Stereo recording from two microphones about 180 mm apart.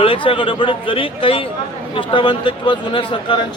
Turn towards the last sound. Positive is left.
turn(degrees=30)  # may be behind; listen again after turning